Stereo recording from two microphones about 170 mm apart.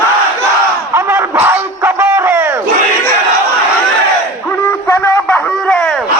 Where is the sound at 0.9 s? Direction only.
15° right (ahead or behind).